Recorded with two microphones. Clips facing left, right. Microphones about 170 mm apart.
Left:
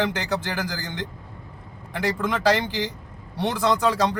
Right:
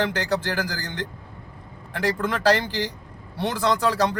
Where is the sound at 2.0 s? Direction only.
15° left (ahead or behind).